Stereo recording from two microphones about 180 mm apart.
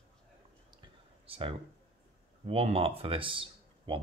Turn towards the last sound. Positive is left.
turn(degrees=-30)  # may be behind; listen again after turning